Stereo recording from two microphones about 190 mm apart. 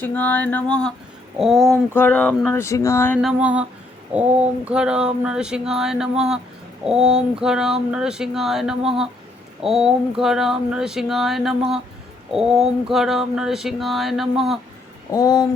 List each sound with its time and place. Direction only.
0.0 s speech: 10° left (ahead or behind)
3.2 s a sound: 5° right (ahead or behind)
15.1 s speech: 15° left (ahead or behind)